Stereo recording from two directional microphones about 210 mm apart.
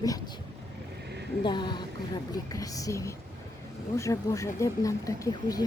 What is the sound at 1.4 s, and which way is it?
Speech, 20° left (ahead or behind).